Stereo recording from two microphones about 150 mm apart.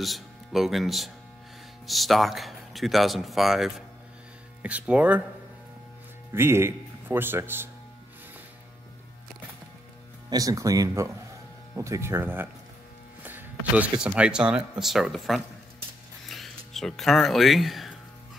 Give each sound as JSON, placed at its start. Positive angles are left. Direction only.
{"t": 0.0, "sound": "speech", "side_deg": 0}
{"t": 6.3, "sound": "speech", "side_deg": -15}
{"t": 10.3, "sound": "speech", "side_deg": -20}